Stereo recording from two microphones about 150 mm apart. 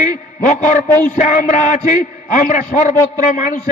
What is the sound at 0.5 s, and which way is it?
Speech, 55° left (ahead or behind).